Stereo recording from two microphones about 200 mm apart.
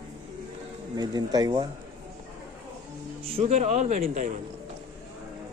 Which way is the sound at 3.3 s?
35° right (ahead or behind).